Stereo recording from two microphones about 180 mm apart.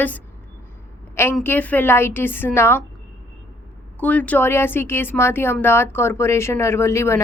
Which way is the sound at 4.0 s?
10° left (ahead or behind).